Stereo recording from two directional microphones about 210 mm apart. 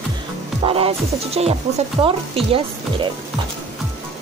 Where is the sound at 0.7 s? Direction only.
25° right (ahead or behind).